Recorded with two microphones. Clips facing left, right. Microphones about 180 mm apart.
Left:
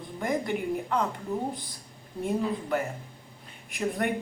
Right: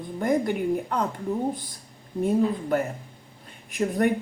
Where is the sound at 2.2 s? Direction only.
45° right (ahead or behind).